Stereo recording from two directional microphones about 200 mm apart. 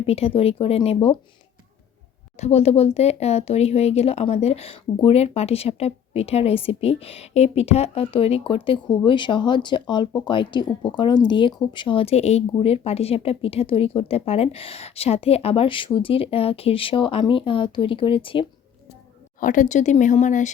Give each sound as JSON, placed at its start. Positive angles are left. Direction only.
{"t": 0.0, "sound": "speech", "side_deg": 30}
{"t": 2.3, "sound": "speech", "side_deg": 35}
{"t": 19.4, "sound": "speech", "side_deg": 40}